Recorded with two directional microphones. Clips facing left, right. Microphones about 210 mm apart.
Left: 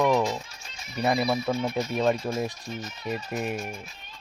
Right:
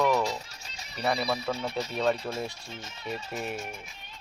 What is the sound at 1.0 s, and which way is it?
Speech, 15° left (ahead or behind).